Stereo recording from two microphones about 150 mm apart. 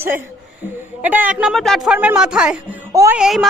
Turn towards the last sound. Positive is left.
turn(degrees=0)  # may be behind; listen again after turning